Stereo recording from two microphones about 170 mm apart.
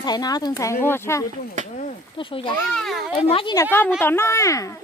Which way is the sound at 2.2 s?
30° left (ahead or behind).